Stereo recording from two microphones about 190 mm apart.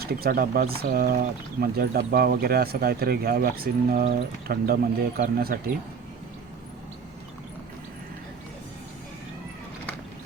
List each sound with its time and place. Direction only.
0.0 s speech: 55° right (ahead or behind)